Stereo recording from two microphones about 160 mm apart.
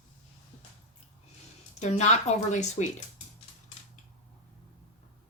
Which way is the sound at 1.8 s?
45° left (ahead or behind).